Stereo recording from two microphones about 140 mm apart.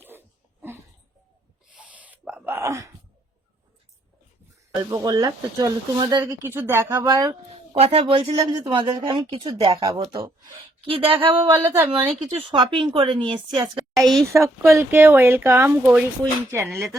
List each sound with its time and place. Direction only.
1.9 s a sound: 10° right (ahead or behind)
4.8 s speech: 25° right (ahead or behind)
7.5 s speech: 50° right (ahead or behind)
8.0 s speech: 35° right (ahead or behind)
10.8 s speech: 40° right (ahead or behind)
11.4 s speech: 20° right (ahead or behind)
12.0 s speech: 40° right (ahead or behind)
14.0 s speech: centre (ahead or behind)
14.8 s speech: 15° right (ahead or behind)